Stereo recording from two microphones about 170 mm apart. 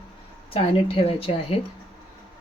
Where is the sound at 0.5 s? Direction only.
35° left (ahead or behind).